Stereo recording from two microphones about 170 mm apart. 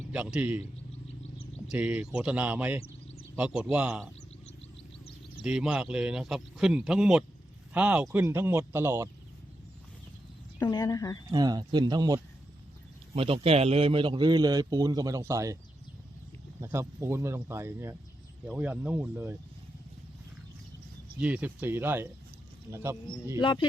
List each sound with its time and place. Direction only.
0.1 s speech: 5° right (ahead or behind)
1.7 s speech: 10° right (ahead or behind)
5.4 s speech: 5° right (ahead or behind)
10.6 s a woman's voice: 25° left (ahead or behind)
11.3 s a man's voice: 25° right (ahead or behind)
16.6 s speech: 15° right (ahead or behind)
21.2 s speech: 10° right (ahead or behind)
23.4 s a woman's voice: 30° left (ahead or behind)